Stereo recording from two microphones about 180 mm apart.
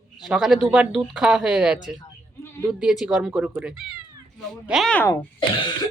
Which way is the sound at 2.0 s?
15° left (ahead or behind).